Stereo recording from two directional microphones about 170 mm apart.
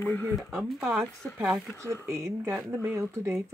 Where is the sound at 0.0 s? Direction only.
15° left (ahead or behind).